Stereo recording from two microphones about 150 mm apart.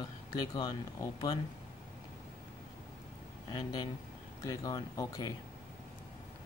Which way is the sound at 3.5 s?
25° left (ahead or behind).